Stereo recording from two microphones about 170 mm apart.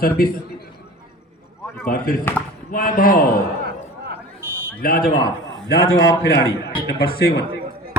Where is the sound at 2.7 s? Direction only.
55° left (ahead or behind).